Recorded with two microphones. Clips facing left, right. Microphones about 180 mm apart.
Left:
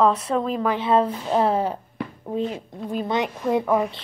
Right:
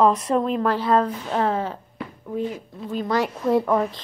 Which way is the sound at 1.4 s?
10° left (ahead or behind).